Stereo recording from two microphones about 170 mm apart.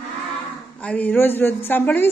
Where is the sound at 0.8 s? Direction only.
10° left (ahead or behind).